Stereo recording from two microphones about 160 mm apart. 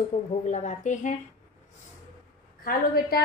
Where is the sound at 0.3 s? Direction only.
45° left (ahead or behind).